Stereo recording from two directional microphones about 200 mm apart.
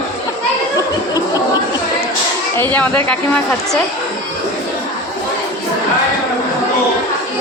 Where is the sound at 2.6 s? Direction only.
10° left (ahead or behind).